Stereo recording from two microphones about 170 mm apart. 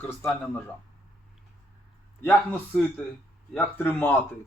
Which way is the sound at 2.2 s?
10° left (ahead or behind).